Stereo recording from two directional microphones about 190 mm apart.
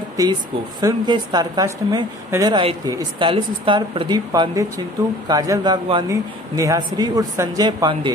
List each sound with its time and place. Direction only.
0.2 s a woman's voice: 20° right (ahead or behind)